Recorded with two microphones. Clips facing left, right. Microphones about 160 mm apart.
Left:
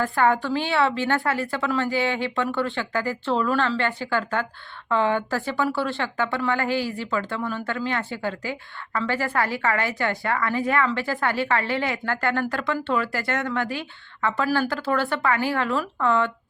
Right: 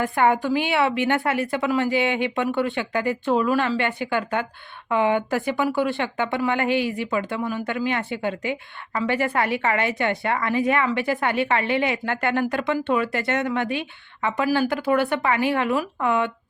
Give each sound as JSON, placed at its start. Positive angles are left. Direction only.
{"t": 0.0, "sound": "a woman's voice", "side_deg": -20}